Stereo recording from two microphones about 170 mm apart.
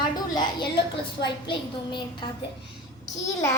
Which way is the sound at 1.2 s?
25° left (ahead or behind).